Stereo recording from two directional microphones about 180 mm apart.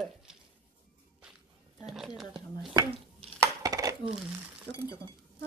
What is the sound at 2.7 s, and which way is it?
Dishes, 20° right (ahead or behind).